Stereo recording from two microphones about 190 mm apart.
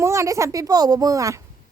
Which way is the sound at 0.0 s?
15° right (ahead or behind).